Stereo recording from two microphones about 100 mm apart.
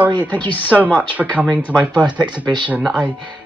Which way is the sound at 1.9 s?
50° right (ahead or behind).